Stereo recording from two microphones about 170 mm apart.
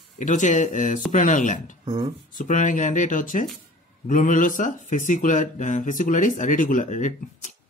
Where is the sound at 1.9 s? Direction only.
25° right (ahead or behind).